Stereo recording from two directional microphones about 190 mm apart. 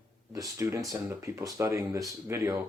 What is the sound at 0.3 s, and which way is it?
Speech, 15° right (ahead or behind).